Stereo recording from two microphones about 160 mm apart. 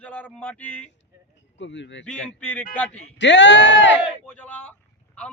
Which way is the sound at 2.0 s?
10° left (ahead or behind).